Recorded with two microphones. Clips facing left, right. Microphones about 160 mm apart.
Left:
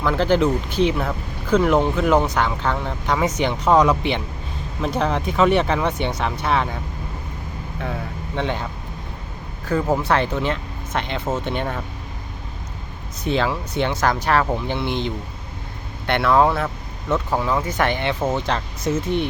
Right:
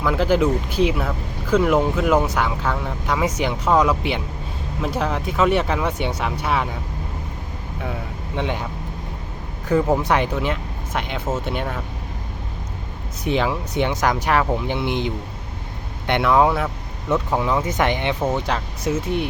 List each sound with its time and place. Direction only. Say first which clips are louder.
0.0 s speech: even; 10° right (ahead or behind)
8.4 s speech: even; 10° right (ahead or behind)
10.0 s speech: even; 15° right (ahead or behind)
13.2 s speech: even; 15° right (ahead or behind)